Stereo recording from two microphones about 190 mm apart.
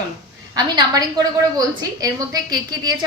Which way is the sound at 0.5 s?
20° right (ahead or behind).